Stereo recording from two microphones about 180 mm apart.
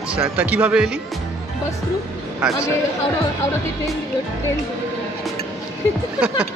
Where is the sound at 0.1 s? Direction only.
5° right (ahead or behind).